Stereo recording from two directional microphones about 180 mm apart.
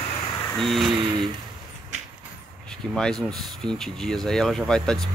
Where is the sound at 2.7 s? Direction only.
5° left (ahead or behind).